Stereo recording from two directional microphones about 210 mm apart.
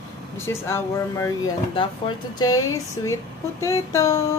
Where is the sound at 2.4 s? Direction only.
15° left (ahead or behind).